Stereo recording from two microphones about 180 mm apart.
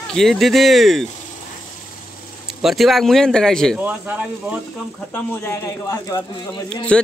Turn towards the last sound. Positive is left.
turn(degrees=5)  # may be behind; listen again after turning